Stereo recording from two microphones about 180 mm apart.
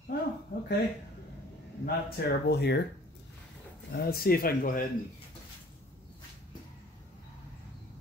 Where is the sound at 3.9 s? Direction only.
60° left (ahead or behind).